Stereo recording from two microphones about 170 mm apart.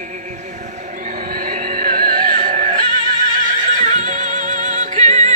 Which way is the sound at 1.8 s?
50° right (ahead or behind).